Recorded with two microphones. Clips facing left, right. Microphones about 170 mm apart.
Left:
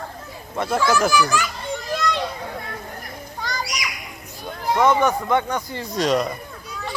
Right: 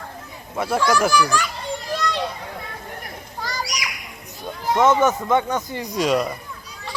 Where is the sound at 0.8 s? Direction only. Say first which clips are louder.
Even; centre (ahead or behind).